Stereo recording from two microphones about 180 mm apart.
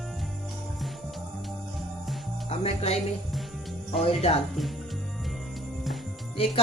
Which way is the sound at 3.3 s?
Centre (ahead or behind).